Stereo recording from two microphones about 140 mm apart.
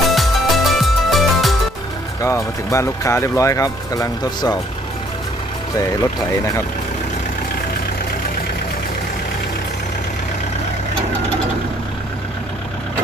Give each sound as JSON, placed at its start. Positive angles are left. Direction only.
{"t": 0.1, "sound": "music", "side_deg": 0}
{"t": 2.2, "sound": "speech", "side_deg": 20}